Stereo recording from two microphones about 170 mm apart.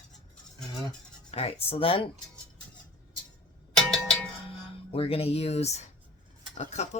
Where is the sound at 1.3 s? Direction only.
35° left (ahead or behind).